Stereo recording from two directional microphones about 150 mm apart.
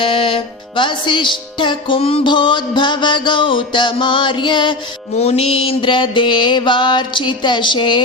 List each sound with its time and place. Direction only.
0.0 s music: 35° left (ahead or behind)
5.1 s music: 45° left (ahead or behind)